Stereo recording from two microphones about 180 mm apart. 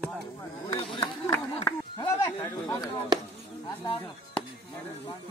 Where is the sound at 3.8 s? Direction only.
30° left (ahead or behind).